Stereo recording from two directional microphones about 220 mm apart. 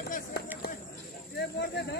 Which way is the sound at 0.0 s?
40° left (ahead or behind).